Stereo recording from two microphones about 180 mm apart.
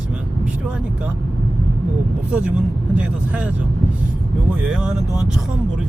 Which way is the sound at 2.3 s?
10° right (ahead or behind).